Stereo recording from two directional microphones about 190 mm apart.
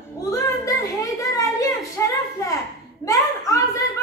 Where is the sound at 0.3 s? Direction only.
20° left (ahead or behind).